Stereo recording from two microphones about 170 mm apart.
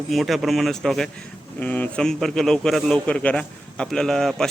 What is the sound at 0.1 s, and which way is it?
A man's voice, centre (ahead or behind).